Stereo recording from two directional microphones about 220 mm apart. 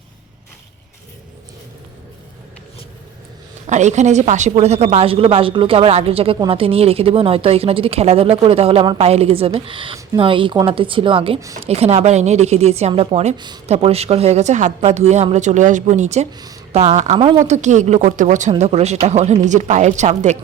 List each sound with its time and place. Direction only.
3.7 s speech: 30° right (ahead or behind)